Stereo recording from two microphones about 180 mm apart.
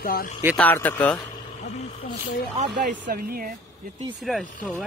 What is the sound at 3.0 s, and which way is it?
Speech, 55° right (ahead or behind).